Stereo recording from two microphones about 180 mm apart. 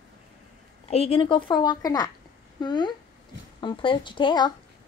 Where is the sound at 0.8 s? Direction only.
35° left (ahead or behind).